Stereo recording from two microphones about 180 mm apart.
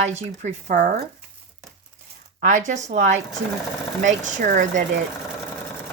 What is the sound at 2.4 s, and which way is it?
Speech, 45° right (ahead or behind).